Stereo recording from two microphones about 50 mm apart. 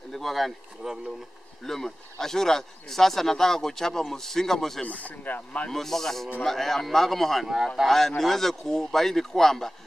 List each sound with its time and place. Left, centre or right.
0.1 s speech: centre
0.8 s speech: centre
1.6 s speech: centre
4.8 s speech: left
5.7 s speech: centre
7.4 s speech: centre